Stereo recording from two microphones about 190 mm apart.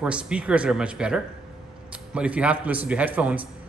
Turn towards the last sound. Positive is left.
turn(degrees=-5)  # may be behind; listen again after turning